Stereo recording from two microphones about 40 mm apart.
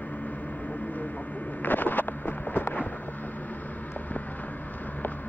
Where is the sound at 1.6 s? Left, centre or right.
Left.